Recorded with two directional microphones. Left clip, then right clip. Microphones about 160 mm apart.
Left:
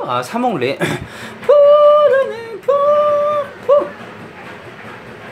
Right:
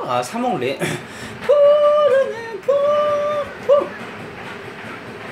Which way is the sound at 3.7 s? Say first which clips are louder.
Left 3 dB; 15° left (ahead or behind).